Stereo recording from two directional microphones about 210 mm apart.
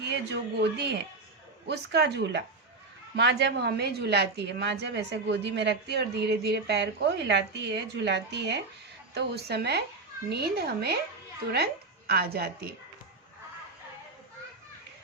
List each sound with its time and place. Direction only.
0.0 s a woman's voice: 55° right (ahead or behind)